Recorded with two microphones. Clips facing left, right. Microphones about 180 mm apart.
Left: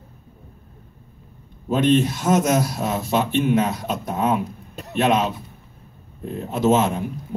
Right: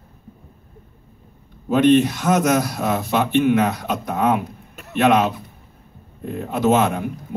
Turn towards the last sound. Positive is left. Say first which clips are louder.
# right 1 dB
turn(degrees=-60)  # may be behind; listen again after turning